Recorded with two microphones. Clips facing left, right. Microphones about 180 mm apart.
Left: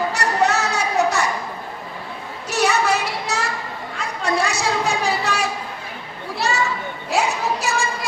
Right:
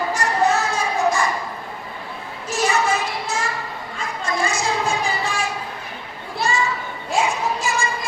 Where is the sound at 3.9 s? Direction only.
70° left (ahead or behind).